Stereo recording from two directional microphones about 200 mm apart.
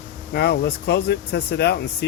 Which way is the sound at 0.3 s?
55° left (ahead or behind).